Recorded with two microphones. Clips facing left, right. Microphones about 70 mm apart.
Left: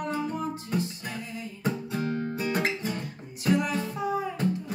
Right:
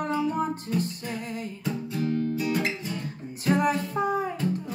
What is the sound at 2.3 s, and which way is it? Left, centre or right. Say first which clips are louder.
Guitar: right 1 dB; left.